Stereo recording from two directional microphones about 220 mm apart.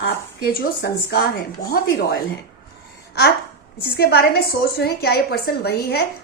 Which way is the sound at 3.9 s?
45° left (ahead or behind).